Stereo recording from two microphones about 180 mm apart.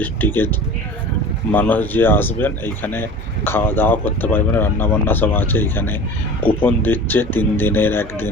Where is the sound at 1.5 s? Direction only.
10° left (ahead or behind).